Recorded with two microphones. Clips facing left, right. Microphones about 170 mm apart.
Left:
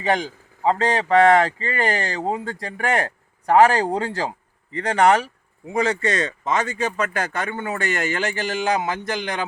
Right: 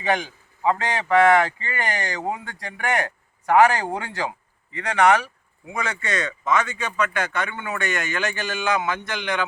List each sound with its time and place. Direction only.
0.0 s a man's voice: 35° left (ahead or behind)